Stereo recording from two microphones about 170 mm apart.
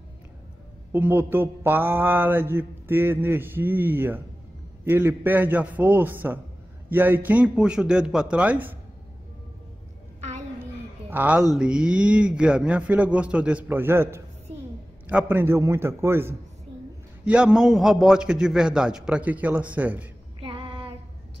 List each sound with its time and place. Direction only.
0.9 s a man's voice: 10° right (ahead or behind)
11.1 s a man's voice: 10° right (ahead or behind)
20.3 s female singing: 30° right (ahead or behind)